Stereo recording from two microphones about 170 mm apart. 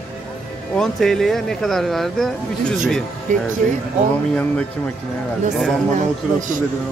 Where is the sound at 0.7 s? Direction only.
Centre (ahead or behind).